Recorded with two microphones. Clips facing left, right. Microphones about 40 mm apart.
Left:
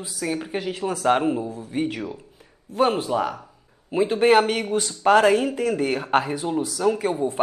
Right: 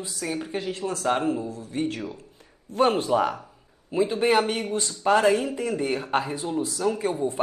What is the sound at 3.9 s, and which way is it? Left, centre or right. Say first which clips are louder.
Speech: left 4 dB; left.